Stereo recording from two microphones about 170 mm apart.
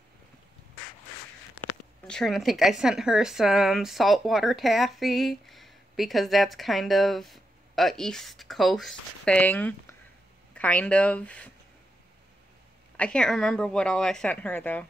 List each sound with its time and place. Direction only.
2.0 s speech: centre (ahead or behind)
12.9 s speech: 5° left (ahead or behind)